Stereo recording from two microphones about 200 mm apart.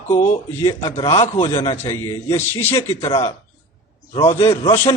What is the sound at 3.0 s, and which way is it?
A man's voice, 30° left (ahead or behind).